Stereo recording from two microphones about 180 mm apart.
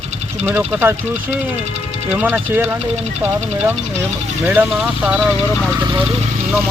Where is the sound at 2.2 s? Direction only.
10° right (ahead or behind).